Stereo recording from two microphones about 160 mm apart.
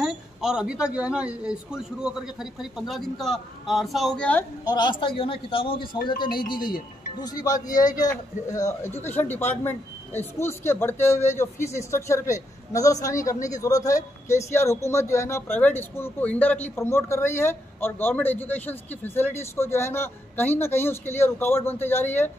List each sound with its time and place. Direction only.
0.0 s speech: 5° right (ahead or behind)
4.6 s a man's voice: 30° left (ahead or behind); by 22.3 s 15° left (ahead or behind)